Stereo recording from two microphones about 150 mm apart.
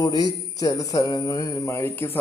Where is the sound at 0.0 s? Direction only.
25° left (ahead or behind).